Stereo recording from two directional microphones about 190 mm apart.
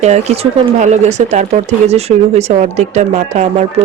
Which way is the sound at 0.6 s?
35° right (ahead or behind).